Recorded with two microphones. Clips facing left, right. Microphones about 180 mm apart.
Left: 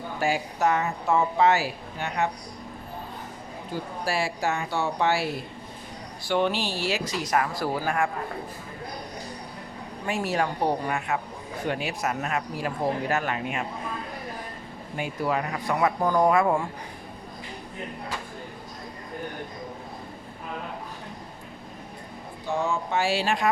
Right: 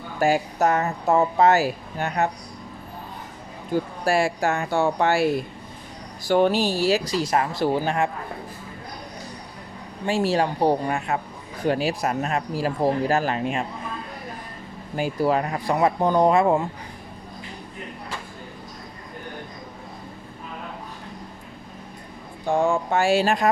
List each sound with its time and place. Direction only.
0.2 s speech: 45° right (ahead or behind)
4.0 s speech: 50° right (ahead or behind)
6.2 s speech: 40° right (ahead or behind); by 8.1 s 25° right (ahead or behind)
10.1 s speech: 30° right (ahead or behind)
14.9 s speech: 35° right (ahead or behind)
22.4 s speech: 50° right (ahead or behind)